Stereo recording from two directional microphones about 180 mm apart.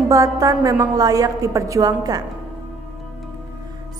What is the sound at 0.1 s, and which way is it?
Speech, 20° right (ahead or behind).